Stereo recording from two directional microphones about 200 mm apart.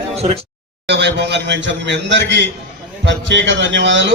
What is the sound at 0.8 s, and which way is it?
A man's voice, 60° right (ahead or behind).